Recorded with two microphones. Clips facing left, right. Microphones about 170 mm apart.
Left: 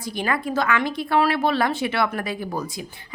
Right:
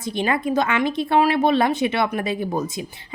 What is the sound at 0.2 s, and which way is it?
A woman's voice, 20° right (ahead or behind).